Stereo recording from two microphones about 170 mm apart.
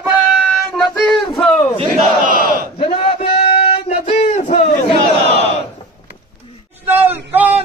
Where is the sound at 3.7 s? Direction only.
35° left (ahead or behind).